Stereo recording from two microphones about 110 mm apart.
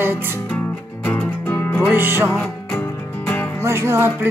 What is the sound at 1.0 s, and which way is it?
Music, 15° left (ahead or behind).